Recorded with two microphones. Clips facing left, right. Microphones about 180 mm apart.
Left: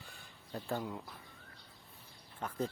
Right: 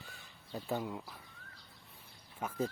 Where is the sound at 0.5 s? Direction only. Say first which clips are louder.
Right 1 dB; centre (ahead or behind).